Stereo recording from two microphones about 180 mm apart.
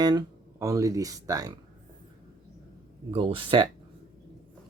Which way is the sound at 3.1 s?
30° right (ahead or behind).